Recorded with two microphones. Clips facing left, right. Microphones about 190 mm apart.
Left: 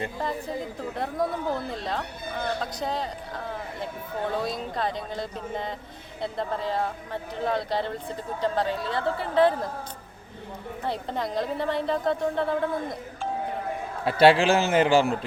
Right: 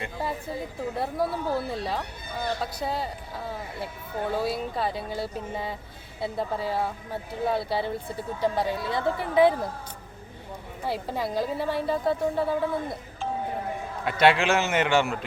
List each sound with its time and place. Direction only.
0.9 s a woman's voice: 5° right (ahead or behind)
10.8 s a woman's voice: 5° right (ahead or behind)
14.0 s a man's voice: 30° left (ahead or behind)